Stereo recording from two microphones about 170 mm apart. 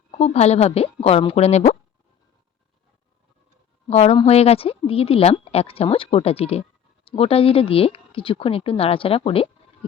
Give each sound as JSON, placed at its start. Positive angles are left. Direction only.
{"t": 0.1, "sound": "speech", "side_deg": 40}
{"t": 3.8, "sound": "speech", "side_deg": 35}